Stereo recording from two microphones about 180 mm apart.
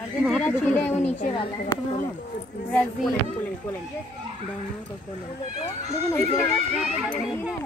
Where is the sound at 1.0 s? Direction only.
45° left (ahead or behind).